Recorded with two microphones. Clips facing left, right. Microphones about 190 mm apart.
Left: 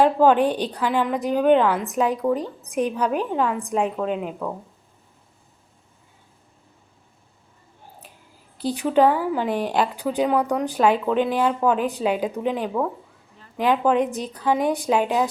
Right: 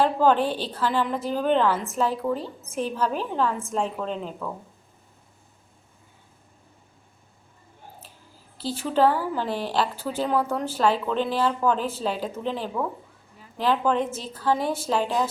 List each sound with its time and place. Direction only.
0.0 s a woman's voice: 10° left (ahead or behind)
8.6 s a woman's voice: 15° left (ahead or behind)